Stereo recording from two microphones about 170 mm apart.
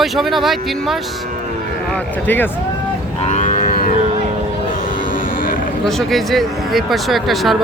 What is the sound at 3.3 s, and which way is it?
Livestock, 45° left (ahead or behind).